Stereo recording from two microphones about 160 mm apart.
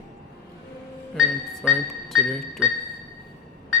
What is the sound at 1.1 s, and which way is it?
A man's voice, centre (ahead or behind).